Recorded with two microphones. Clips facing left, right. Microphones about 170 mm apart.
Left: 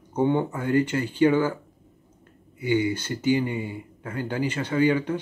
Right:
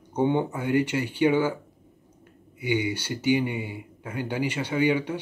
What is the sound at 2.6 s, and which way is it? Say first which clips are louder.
Speech: left 3 dB; 15° right (ahead or behind).